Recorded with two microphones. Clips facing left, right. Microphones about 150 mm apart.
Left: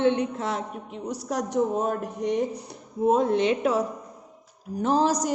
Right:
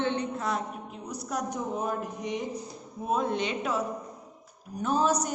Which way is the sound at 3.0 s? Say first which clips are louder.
Left 8 dB; 80° left.